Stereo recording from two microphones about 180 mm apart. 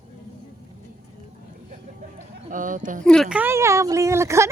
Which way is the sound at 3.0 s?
5° left (ahead or behind).